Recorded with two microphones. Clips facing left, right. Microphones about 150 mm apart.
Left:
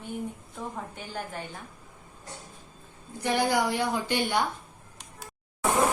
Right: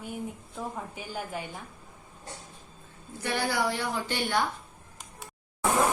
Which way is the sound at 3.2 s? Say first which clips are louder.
Left 3 dB; 15° left (ahead or behind).